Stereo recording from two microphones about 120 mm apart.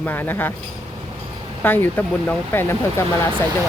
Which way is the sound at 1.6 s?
15° left (ahead or behind).